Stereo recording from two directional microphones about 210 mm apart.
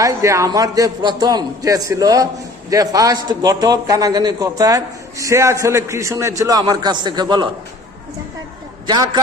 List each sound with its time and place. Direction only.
0.0 s a man's voice: 15° right (ahead or behind)
8.9 s a man's voice: 20° right (ahead or behind)